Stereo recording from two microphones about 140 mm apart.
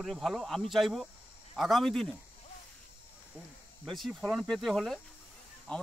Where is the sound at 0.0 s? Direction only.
Centre (ahead or behind).